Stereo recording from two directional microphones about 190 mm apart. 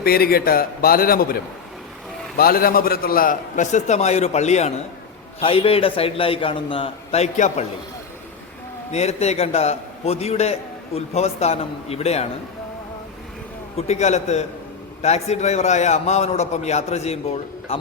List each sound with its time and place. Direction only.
0.0 s a man's voice: 50° left (ahead or behind)
2.4 s a man's voice: 50° left (ahead or behind)
8.9 s a man's voice: 35° left (ahead or behind)
13.7 s a man's voice: 35° left (ahead or behind)